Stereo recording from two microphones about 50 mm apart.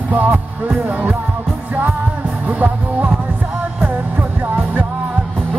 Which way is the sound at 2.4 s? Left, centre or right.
Right.